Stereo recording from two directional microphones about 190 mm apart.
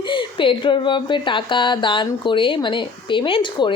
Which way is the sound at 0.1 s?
25° left (ahead or behind).